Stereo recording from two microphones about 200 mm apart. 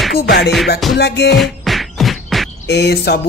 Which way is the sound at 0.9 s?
60° left (ahead or behind).